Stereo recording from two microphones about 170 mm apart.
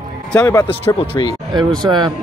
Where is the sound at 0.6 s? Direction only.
30° left (ahead or behind).